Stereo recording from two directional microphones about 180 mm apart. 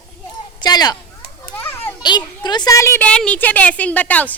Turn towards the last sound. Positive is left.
turn(degrees=10)  # may be behind; listen again after turning